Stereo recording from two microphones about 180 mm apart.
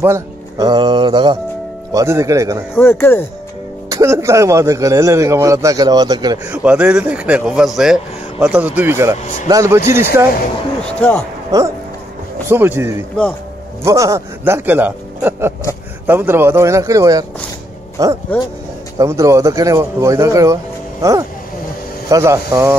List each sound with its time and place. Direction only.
0.0 s speech: 20° right (ahead or behind)
2.7 s speech: 10° left (ahead or behind)
3.9 s speech: 15° right (ahead or behind)
6.4 s speech: 10° right (ahead or behind)
10.9 s speech: 10° left (ahead or behind)
11.5 s speech: 20° right (ahead or behind)